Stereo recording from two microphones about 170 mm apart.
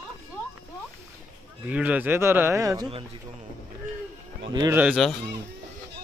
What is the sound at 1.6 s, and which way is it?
A man's voice, 10° right (ahead or behind).